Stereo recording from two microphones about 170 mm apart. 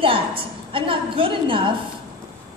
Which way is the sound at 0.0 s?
30° right (ahead or behind).